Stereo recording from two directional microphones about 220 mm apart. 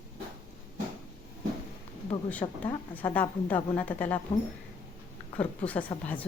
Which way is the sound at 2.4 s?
15° left (ahead or behind).